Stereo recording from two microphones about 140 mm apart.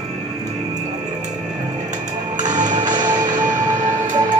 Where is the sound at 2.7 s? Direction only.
30° right (ahead or behind).